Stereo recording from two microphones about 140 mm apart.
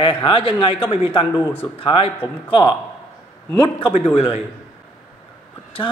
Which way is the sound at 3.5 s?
30° left (ahead or behind).